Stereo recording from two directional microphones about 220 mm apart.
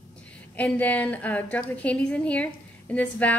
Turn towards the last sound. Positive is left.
turn(degrees=5)  # may be behind; listen again after turning